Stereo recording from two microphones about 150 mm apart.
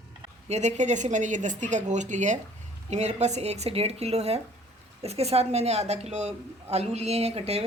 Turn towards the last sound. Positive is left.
turn(degrees=-45)  # may be behind; listen again after turning